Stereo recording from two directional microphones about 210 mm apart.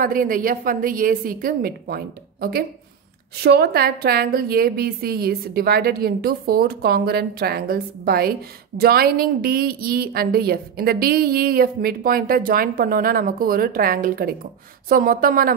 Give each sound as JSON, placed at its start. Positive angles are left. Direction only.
{"t": 0.0, "sound": "a woman's voice", "side_deg": -40}